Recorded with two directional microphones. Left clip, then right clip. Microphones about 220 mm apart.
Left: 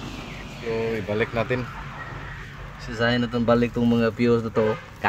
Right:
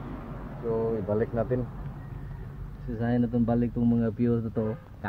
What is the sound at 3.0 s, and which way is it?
Speech, 10° left (ahead or behind).